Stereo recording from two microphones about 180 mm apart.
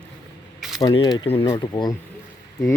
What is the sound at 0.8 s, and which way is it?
Speech, 25° left (ahead or behind).